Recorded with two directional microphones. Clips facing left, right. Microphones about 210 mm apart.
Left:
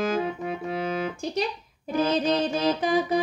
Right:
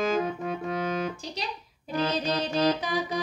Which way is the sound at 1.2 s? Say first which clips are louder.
Left 9 dB; 50° left (ahead or behind).